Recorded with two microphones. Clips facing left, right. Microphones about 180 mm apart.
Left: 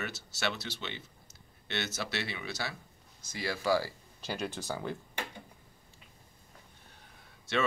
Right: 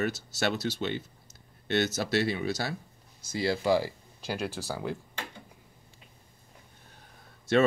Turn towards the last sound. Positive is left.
turn(degrees=-40)  # may be behind; listen again after turning